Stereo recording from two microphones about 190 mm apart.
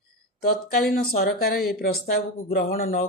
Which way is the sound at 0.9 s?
50° left (ahead or behind).